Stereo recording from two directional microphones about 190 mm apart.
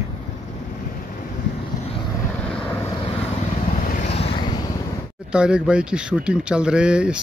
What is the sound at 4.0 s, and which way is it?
Vehicle, 30° left (ahead or behind).